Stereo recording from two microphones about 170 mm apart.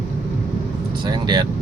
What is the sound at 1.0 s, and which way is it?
Speech, 25° right (ahead or behind).